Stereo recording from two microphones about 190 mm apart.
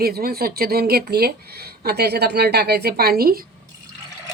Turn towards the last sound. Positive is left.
turn(degrees=-50)  # may be behind; listen again after turning